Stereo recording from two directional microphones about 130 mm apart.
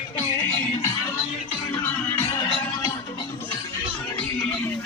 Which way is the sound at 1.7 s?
15° left (ahead or behind).